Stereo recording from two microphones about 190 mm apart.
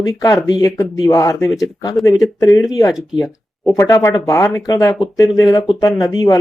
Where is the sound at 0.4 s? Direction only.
20° left (ahead or behind).